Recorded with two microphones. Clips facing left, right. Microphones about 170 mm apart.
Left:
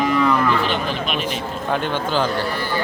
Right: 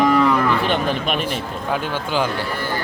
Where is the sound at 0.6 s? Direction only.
50° right (ahead or behind).